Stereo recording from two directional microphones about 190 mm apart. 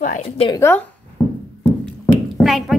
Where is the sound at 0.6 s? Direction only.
15° left (ahead or behind).